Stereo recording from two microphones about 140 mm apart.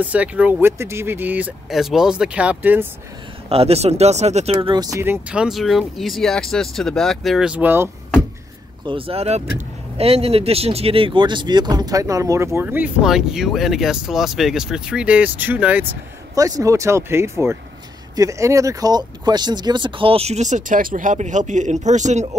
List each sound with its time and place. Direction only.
0.0 s speech: 10° right (ahead or behind)
3.4 s speech: 45° right (ahead or behind); by 7.9 s 15° right (ahead or behind)
8.8 s speech: 40° right (ahead or behind); by 16.0 s 10° right (ahead or behind)
16.3 s speech: 25° right (ahead or behind); by 22.4 s 55° right (ahead or behind)